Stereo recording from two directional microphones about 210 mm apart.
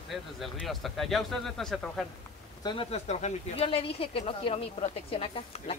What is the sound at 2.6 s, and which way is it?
Speech, 30° left (ahead or behind).